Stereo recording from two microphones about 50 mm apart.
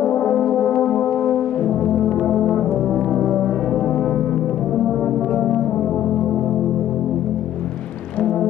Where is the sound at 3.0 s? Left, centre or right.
Centre.